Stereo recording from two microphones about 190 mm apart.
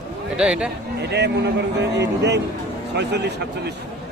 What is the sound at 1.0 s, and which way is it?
A man's voice, 60° right (ahead or behind).